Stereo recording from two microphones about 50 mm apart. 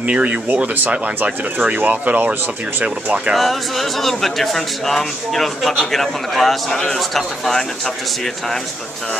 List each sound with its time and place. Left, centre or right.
0.0 s speech: right
3.3 s speech: centre